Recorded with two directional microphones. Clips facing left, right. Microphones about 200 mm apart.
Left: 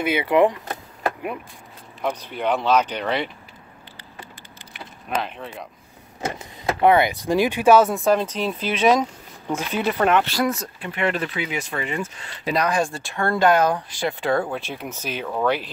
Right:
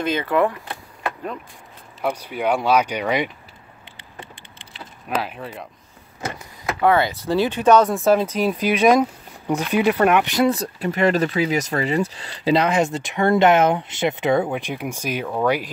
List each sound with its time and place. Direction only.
0.0 s speech: 10° left (ahead or behind)
2.0 s speech: 10° right (ahead or behind)
5.2 s speech: 5° right (ahead or behind)
6.2 s speech: 25° left (ahead or behind); by 10.5 s 20° right (ahead or behind)
10.5 s speech: 35° right (ahead or behind); by 15.7 s 10° right (ahead or behind)